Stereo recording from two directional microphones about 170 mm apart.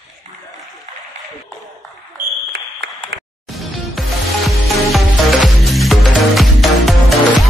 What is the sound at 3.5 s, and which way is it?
Music, centre (ahead or behind).